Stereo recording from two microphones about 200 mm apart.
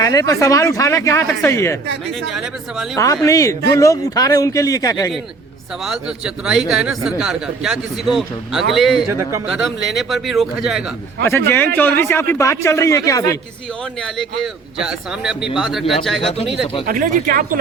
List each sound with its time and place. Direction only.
0.0 s speech: 15° left (ahead or behind)
2.3 s speech: centre (ahead or behind)
2.9 s speech: 15° left (ahead or behind)
5.8 s speech: 5° right (ahead or behind)
11.3 s speech: 10° left (ahead or behind)
14.0 s speech: centre (ahead or behind)
16.8 s speech: 45° right (ahead or behind)